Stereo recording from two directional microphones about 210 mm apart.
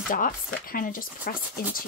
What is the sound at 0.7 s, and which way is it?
Speech, 40° left (ahead or behind).